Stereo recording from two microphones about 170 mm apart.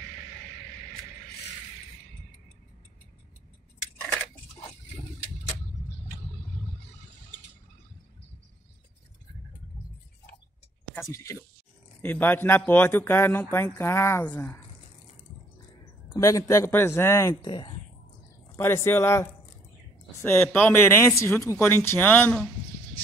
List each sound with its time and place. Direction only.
11.0 s speech: 15° left (ahead or behind)
16.1 s speech: 20° left (ahead or behind)
17.5 s speech: 25° left (ahead or behind)
18.6 s speech: 15° left (ahead or behind)